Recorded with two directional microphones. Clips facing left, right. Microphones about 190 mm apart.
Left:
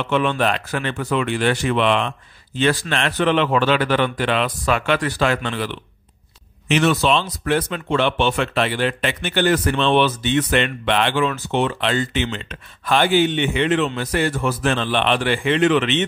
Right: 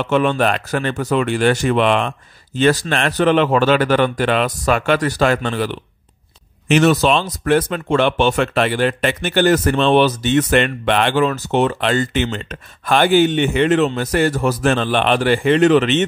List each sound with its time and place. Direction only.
0.0 s speech: 40° right (ahead or behind)